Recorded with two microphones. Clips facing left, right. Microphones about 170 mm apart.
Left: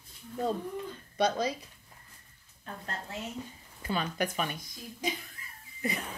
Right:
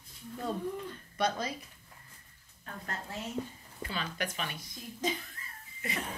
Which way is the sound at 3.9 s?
45° left (ahead or behind).